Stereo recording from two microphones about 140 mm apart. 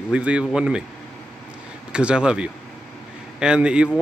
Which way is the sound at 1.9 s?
5° right (ahead or behind).